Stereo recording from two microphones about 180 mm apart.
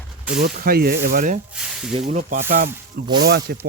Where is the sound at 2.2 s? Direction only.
50° right (ahead or behind).